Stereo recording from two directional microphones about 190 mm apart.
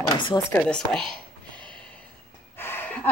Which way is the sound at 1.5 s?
25° right (ahead or behind).